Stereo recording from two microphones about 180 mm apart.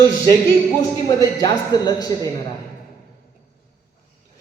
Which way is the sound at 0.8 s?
20° left (ahead or behind).